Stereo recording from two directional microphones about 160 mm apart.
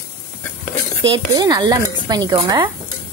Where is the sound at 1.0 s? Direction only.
30° right (ahead or behind).